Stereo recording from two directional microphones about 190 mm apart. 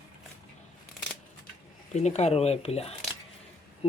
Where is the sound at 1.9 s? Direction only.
35° left (ahead or behind).